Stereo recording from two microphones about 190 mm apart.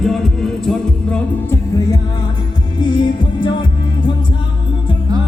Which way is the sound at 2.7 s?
25° left (ahead or behind).